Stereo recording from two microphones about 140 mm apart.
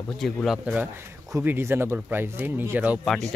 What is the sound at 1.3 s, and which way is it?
Speech, 15° right (ahead or behind).